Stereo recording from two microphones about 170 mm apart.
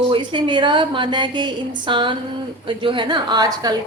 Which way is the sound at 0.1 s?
25° right (ahead or behind).